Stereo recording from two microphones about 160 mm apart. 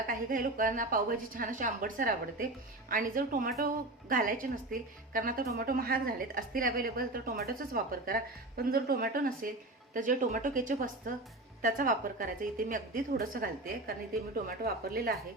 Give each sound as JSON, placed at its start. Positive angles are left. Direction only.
{"t": 0.1, "sound": "a woman's voice", "side_deg": -60}